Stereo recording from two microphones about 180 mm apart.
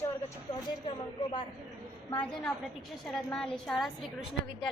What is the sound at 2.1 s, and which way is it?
A woman's voice, 5° left (ahead or behind).